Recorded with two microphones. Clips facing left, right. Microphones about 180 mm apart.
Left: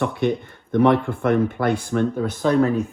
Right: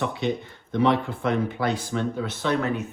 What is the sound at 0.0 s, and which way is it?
Speech, 55° left (ahead or behind).